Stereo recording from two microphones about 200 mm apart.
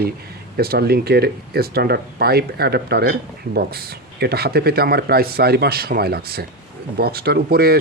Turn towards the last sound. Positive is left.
turn(degrees=-50)  # may be behind; listen again after turning